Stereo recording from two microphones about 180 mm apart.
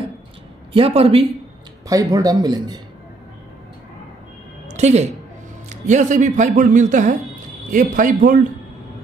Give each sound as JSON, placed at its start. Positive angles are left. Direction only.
{"t": 0.7, "sound": "speech", "side_deg": -30}
{"t": 1.9, "sound": "a man's voice", "side_deg": -20}
{"t": 4.6, "sound": "a sound", "side_deg": -40}
{"t": 5.7, "sound": "speech", "side_deg": -45}